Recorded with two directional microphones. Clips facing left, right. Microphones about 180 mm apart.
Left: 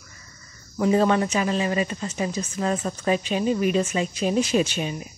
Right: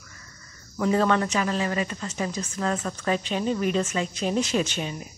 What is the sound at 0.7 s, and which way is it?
Speech, 20° left (ahead or behind).